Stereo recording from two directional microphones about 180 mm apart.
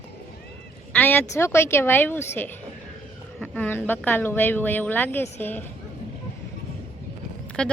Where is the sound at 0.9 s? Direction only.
10° left (ahead or behind).